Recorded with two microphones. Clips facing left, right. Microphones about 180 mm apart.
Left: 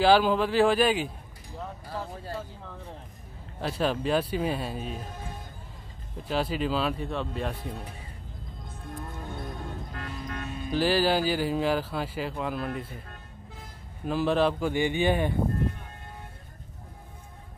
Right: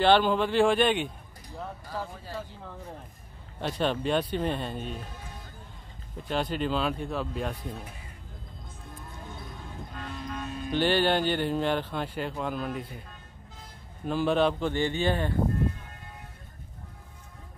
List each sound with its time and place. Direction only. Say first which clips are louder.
0.0 s speech: left 1 dB; 5° left (ahead or behind)
3.6 s speech: left 1 dB; 5° left (ahead or behind)
6.2 s speech: left 1 dB; 5° left (ahead or behind)
9.3 s moo: left 7 dB; 60° left (ahead or behind)
10.2 s music: right 2 dB; 55° left (ahead or behind)
10.6 s speech: even; centre (ahead or behind)
14.0 s speech: even; centre (ahead or behind)